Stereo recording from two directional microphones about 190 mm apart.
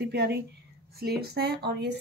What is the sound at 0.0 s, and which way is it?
Speech, 60° right (ahead or behind).